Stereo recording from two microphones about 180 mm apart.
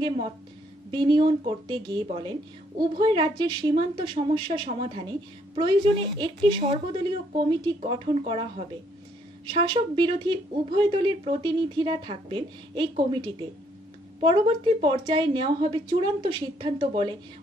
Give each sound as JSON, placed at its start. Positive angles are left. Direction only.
{"t": 0.9, "sound": "a woman's voice", "side_deg": -25}
{"t": 14.2, "sound": "a woman's voice", "side_deg": -30}